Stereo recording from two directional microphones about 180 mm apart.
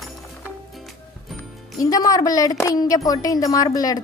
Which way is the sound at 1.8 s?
20° left (ahead or behind).